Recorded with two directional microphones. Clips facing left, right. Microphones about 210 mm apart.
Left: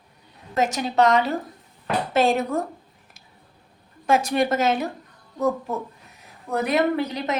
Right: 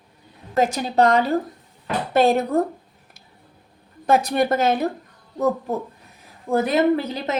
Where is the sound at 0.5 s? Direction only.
35° right (ahead or behind).